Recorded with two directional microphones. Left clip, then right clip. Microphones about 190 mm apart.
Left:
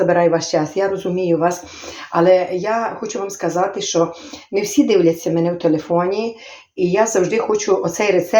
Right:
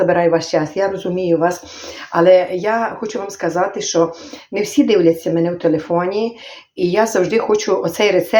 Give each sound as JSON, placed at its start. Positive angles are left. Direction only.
{"t": 0.0, "sound": "speech", "side_deg": -15}